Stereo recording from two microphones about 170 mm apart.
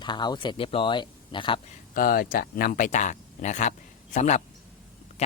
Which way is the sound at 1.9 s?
55° left (ahead or behind).